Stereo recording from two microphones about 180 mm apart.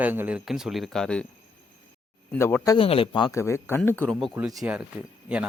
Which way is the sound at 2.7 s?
30° left (ahead or behind).